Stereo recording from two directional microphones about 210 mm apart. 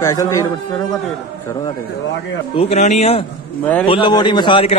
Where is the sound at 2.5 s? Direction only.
30° left (ahead or behind).